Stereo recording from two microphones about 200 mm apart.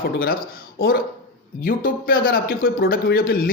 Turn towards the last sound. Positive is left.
turn(degrees=50)  # may be behind; listen again after turning